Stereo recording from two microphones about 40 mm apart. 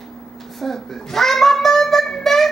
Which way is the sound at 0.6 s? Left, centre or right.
Centre.